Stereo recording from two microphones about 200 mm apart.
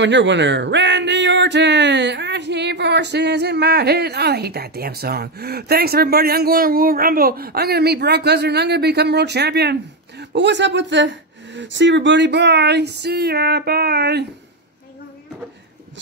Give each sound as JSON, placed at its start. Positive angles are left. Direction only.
{"t": 0.0, "sound": "speech", "side_deg": -65}